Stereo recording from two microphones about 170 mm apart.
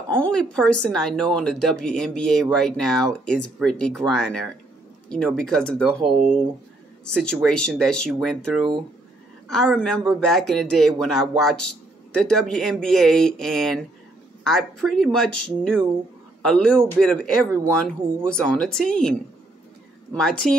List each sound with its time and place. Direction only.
0.1 s a man's voice: 5° left (ahead or behind)
7.4 s a man's voice: 5° left (ahead or behind)
17.5 s speech: 15° right (ahead or behind)
17.7 s a man's voice: 5° left (ahead or behind)
20.2 s a man's voice: 5° left (ahead or behind)